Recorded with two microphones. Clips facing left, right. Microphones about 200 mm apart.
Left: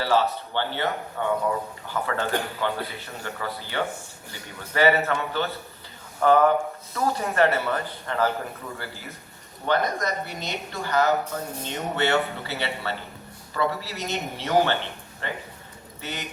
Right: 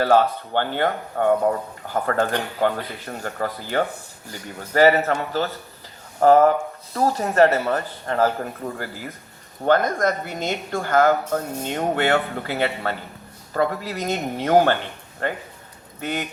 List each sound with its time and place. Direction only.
0.0 s a woman's voice: 50° right (ahead or behind)